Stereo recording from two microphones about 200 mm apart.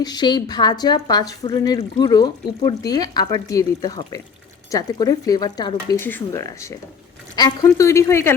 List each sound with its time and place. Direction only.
0.0 s speech: 20° left (ahead or behind)